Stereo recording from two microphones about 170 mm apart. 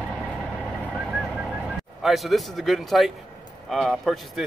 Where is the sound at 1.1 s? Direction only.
5° right (ahead or behind).